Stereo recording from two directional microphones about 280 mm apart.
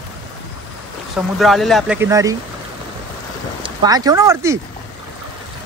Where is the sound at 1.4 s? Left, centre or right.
Centre.